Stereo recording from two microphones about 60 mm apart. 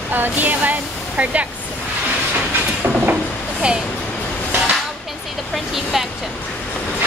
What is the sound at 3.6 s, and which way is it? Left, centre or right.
Speech, centre.